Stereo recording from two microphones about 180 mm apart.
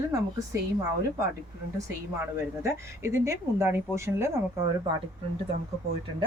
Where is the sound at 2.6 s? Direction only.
15° right (ahead or behind).